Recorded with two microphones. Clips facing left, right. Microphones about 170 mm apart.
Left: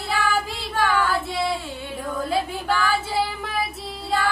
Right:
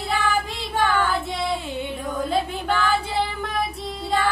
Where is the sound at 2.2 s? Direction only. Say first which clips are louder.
Even; 5° left (ahead or behind).